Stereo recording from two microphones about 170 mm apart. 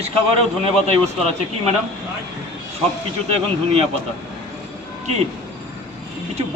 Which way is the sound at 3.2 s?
35° right (ahead or behind).